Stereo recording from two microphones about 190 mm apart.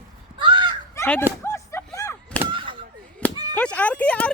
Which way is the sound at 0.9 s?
10° left (ahead or behind).